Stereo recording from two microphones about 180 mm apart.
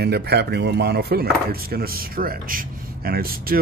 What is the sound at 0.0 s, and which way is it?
Speech, 65° right (ahead or behind).